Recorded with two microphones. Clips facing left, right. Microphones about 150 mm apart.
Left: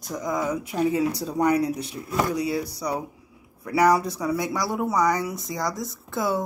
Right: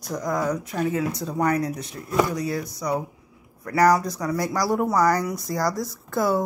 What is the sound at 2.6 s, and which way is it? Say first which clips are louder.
Speech: left 1 dB; 30° left (ahead or behind).